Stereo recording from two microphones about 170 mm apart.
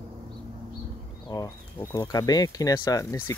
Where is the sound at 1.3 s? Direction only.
20° left (ahead or behind).